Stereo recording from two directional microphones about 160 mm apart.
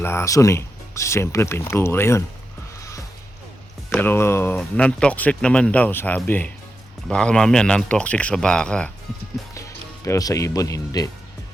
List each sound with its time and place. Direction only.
0.0 s speech: 15° left (ahead or behind)
3.9 s speech: 15° left (ahead or behind)
9.6 s speech: 20° left (ahead or behind)